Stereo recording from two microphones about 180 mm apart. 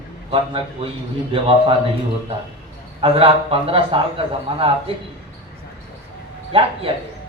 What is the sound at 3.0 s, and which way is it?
A man's voice, 30° right (ahead or behind).